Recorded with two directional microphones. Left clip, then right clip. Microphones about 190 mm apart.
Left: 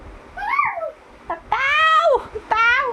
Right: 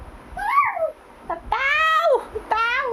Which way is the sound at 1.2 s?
Centre (ahead or behind).